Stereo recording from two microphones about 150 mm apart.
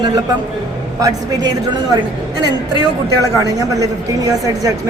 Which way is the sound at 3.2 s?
20° right (ahead or behind).